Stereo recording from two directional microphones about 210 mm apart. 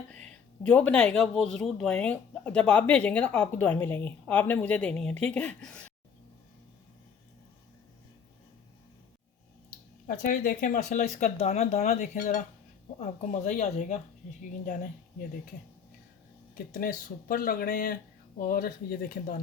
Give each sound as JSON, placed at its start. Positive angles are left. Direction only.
{"t": 0.1, "sound": "speech", "side_deg": 5}
{"t": 9.6, "sound": "speech", "side_deg": 40}
{"t": 16.7, "sound": "speech", "side_deg": 45}